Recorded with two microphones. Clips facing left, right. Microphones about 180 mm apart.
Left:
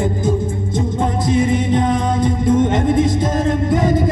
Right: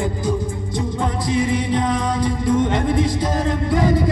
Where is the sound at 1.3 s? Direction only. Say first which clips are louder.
Left 4 dB; 50° left (ahead or behind).